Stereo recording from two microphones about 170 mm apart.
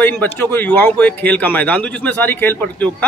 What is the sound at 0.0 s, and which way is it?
A man's voice, 10° left (ahead or behind).